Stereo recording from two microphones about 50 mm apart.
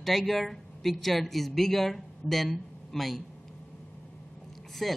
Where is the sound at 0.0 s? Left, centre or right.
Centre.